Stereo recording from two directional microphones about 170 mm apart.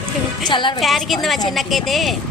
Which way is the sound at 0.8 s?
Centre (ahead or behind).